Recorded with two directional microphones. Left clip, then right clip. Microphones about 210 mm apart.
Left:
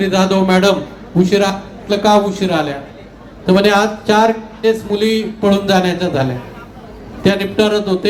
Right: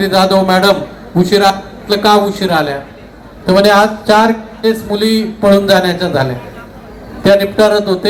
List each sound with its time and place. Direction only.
0.0 s a man's voice: 15° left (ahead or behind)